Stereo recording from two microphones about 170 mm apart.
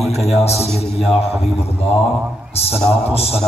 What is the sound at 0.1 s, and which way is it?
Speech, 40° left (ahead or behind).